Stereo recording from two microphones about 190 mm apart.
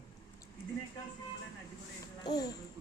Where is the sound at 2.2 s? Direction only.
20° left (ahead or behind).